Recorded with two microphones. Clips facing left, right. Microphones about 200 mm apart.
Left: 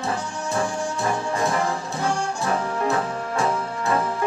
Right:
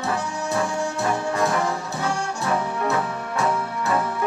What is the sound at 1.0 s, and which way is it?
Music, 30° left (ahead or behind).